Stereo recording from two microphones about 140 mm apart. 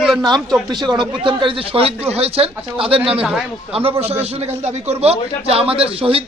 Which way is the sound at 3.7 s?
45° right (ahead or behind).